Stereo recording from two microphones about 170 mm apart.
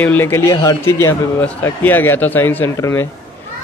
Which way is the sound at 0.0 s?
10° left (ahead or behind).